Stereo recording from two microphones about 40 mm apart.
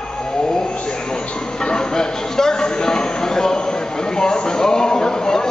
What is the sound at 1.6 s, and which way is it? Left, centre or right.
Music, centre.